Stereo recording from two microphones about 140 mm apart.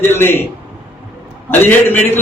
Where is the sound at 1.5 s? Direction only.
15° left (ahead or behind).